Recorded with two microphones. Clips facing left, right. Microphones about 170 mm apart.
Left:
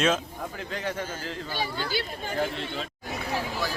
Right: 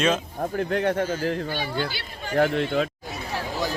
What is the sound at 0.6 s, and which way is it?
A man's voice, 60° right (ahead or behind).